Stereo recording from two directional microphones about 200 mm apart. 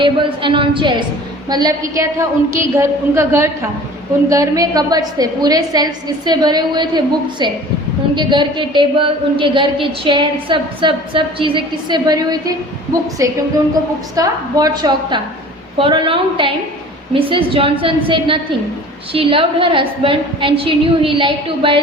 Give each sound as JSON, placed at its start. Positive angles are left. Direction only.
{"t": 0.0, "sound": "a woman's voice", "side_deg": -25}